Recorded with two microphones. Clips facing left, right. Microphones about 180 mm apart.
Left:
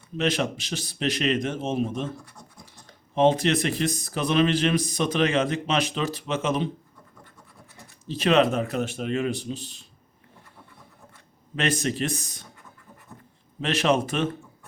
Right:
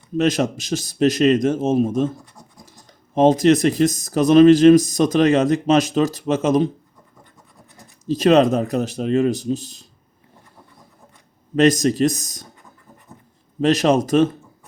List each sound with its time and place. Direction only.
0.2 s a man's voice: 45° right (ahead or behind)
2.1 s speech: 20° right (ahead or behind)
2.7 s speech: 40° right (ahead or behind)
8.0 s speech: 40° right (ahead or behind)
11.5 s speech: 40° right (ahead or behind)
13.6 s speech: 40° right (ahead or behind)